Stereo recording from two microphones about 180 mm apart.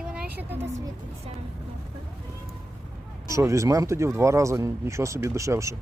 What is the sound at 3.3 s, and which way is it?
Speech, 15° right (ahead or behind).